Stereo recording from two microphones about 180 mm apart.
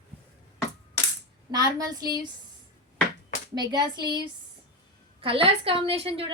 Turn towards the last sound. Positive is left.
turn(degrees=-30)  # may be behind; listen again after turning